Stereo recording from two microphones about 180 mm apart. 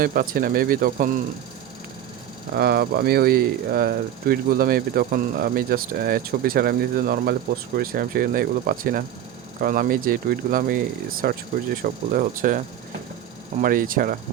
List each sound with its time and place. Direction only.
0.0 s speech: 55° right (ahead or behind)
2.6 s speech: 60° right (ahead or behind)